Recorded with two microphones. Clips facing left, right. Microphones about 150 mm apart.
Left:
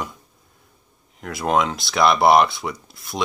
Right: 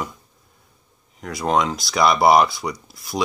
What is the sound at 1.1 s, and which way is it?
Speech, centre (ahead or behind).